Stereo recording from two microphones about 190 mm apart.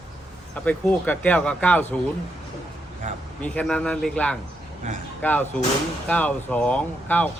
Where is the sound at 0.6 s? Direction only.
10° left (ahead or behind).